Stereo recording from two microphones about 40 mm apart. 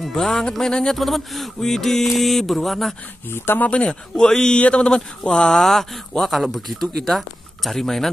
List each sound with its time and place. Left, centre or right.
0.2 s speech: centre
0.9 s speech: centre
3.3 s speech: left
4.2 s speech: centre
4.6 s a sound: left
4.8 s speech: centre
5.6 s speech: centre